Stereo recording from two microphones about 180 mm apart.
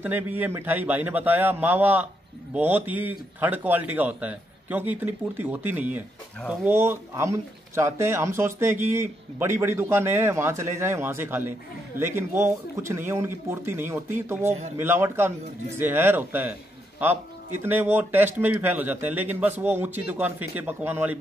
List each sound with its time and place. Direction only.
0.0 s speech: 10° right (ahead or behind)
14.4 s a man's voice: 40° right (ahead or behind)
14.8 s speech: 15° right (ahead or behind)